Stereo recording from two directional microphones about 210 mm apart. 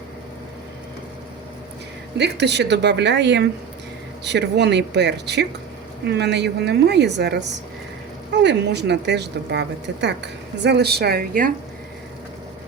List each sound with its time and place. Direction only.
2.1 s a woman's voice: 55° right (ahead or behind)